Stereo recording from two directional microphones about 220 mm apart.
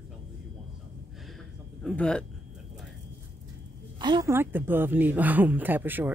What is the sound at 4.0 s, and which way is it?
Speech, 20° right (ahead or behind).